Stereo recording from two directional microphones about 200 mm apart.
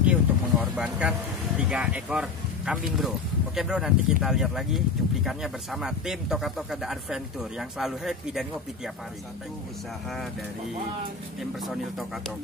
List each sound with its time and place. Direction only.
0.0 s vehicle: 5° right (ahead or behind)
1.6 s speech: 5° right (ahead or behind)
11.6 s speech: centre (ahead or behind)